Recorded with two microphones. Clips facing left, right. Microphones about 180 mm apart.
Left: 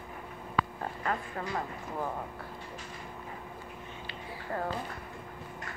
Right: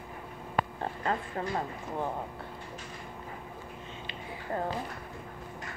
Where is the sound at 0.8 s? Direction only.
30° right (ahead or behind).